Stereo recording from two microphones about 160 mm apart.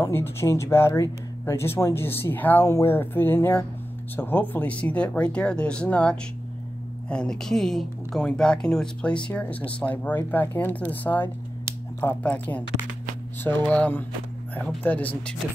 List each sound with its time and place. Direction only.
0.0 s speech: 15° left (ahead or behind)